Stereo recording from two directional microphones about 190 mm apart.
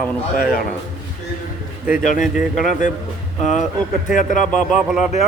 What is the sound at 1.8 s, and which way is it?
Speech, centre (ahead or behind).